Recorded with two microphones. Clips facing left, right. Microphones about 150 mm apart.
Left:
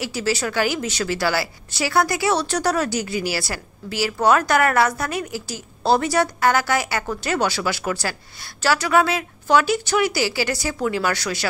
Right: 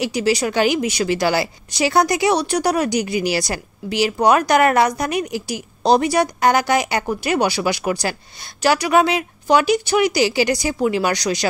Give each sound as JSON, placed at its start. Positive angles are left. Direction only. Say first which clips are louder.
{"t": 0.0, "sound": "a woman's voice", "louder": "right 5 dB", "side_deg": -15}